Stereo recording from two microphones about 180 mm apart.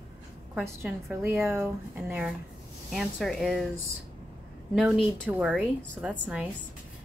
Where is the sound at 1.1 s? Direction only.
10° right (ahead or behind).